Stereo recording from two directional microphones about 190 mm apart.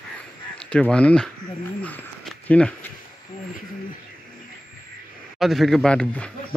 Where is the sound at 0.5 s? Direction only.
5° left (ahead or behind).